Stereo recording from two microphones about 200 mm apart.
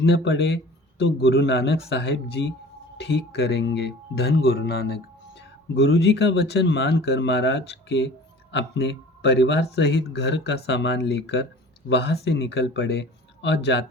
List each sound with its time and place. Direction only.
0.0 s speech: 60° left (ahead or behind)